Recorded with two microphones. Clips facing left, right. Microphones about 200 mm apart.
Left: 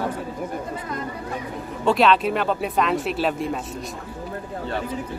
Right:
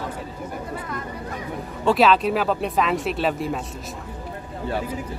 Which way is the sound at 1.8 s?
Centre (ahead or behind).